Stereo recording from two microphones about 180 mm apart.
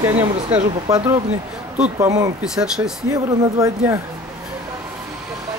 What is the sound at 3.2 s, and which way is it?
Speech, 20° right (ahead or behind).